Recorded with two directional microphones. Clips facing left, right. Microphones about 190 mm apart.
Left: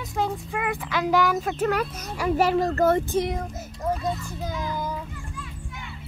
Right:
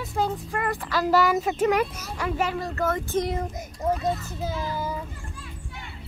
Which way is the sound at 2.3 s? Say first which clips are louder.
Left 8 dB; 40° left (ahead or behind).